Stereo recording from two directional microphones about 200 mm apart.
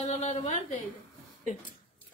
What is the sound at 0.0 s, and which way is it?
Speech, 35° left (ahead or behind).